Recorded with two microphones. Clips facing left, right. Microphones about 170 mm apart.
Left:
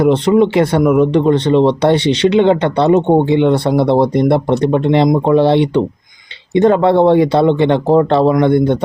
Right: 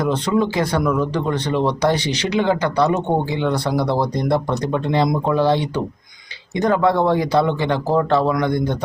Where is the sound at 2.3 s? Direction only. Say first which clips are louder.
Left 6 dB; 65° left (ahead or behind).